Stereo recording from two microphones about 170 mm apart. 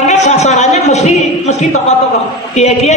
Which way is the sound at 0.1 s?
40° left (ahead or behind).